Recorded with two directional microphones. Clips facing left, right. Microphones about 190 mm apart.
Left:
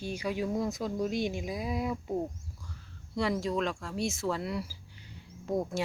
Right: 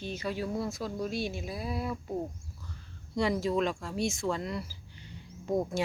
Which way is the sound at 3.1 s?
Centre (ahead or behind).